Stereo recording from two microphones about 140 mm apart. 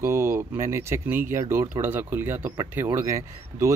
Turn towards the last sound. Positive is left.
turn(degrees=-20)  # may be behind; listen again after turning